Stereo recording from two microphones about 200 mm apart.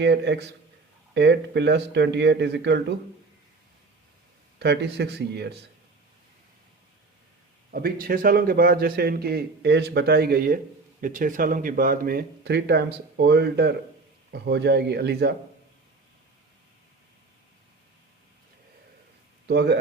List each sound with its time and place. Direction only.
0.0 s speech: 60° right (ahead or behind)
4.6 s speech: 55° right (ahead or behind)
7.7 s a man's voice: 50° right (ahead or behind)
19.5 s speech: 55° right (ahead or behind)